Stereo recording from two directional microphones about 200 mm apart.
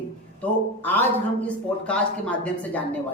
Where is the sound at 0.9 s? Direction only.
10° left (ahead or behind).